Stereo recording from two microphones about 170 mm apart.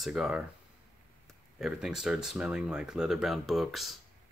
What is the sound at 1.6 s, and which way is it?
Speech, 5° right (ahead or behind).